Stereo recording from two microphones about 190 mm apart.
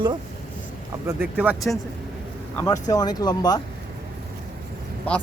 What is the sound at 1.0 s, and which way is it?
Speech, 10° right (ahead or behind).